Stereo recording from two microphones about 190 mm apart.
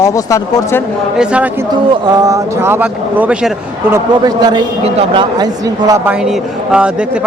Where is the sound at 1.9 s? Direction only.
20° right (ahead or behind).